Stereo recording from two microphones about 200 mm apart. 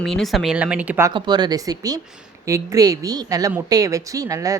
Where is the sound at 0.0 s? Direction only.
Centre (ahead or behind).